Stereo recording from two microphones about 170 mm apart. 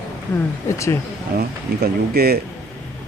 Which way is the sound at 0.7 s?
15° left (ahead or behind).